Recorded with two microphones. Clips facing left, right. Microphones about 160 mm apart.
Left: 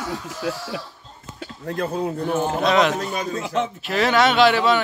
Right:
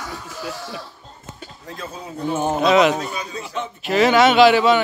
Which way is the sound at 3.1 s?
50° left (ahead or behind).